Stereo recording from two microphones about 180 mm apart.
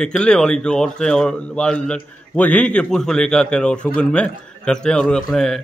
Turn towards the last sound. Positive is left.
turn(degrees=5)  # may be behind; listen again after turning